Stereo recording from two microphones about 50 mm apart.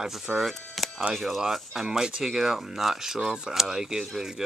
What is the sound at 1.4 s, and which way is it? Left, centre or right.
Speech, centre.